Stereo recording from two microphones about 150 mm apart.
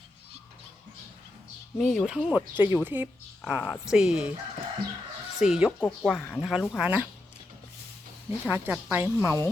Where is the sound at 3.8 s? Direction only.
5° right (ahead or behind).